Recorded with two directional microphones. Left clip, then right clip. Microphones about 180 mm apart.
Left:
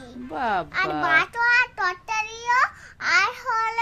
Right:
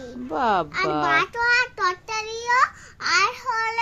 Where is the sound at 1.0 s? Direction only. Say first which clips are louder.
Left 2 dB; 25° left (ahead or behind).